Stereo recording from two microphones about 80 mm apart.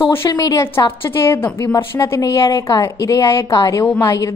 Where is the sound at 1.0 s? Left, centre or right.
Left.